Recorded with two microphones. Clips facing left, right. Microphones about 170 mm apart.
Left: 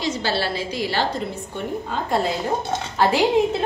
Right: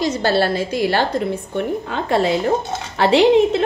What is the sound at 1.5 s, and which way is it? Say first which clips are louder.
A woman's voice: right 3 dB; 70° right (ahead or behind).